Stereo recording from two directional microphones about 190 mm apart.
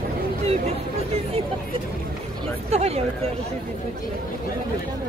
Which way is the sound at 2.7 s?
35° right (ahead or behind).